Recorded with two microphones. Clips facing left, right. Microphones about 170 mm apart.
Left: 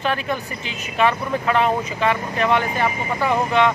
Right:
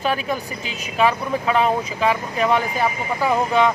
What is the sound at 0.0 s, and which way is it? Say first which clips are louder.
Speech: right 1 dB; 5° right (ahead or behind).